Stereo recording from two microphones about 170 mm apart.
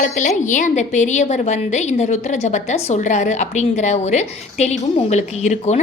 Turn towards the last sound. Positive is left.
turn(degrees=40)  # may be behind; listen again after turning